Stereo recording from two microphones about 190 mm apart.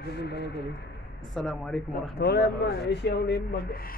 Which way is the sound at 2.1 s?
60° left (ahead or behind).